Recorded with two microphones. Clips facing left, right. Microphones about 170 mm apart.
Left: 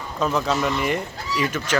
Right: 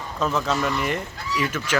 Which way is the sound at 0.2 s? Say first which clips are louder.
Left 2 dB; centre (ahead or behind).